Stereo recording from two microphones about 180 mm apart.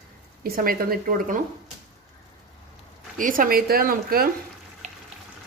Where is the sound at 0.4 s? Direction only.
55° right (ahead or behind).